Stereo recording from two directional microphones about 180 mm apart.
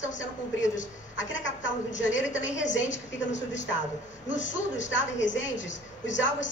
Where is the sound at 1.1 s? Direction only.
90° left.